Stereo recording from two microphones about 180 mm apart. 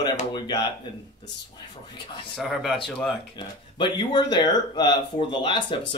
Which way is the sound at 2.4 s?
Centre (ahead or behind).